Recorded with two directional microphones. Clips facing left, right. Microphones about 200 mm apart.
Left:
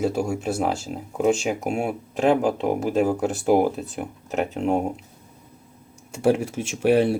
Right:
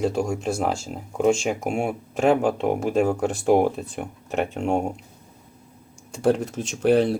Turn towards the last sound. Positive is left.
turn(degrees=5)  # may be behind; listen again after turning